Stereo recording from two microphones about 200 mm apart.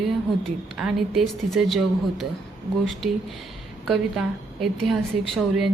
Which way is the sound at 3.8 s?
Centre (ahead or behind).